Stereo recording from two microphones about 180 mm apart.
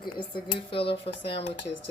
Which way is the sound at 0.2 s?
30° left (ahead or behind).